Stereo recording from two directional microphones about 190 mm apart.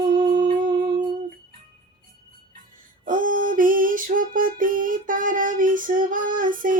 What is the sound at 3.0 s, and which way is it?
Female singing, 45° right (ahead or behind).